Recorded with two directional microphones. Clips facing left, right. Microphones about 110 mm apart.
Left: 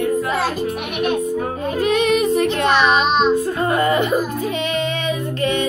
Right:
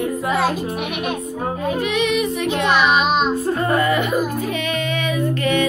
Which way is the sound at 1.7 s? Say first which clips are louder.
Left 5 dB; 40° left (ahead or behind).